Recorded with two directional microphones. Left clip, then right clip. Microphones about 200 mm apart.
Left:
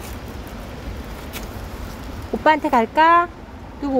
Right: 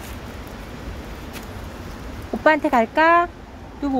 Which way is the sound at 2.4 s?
5° right (ahead or behind).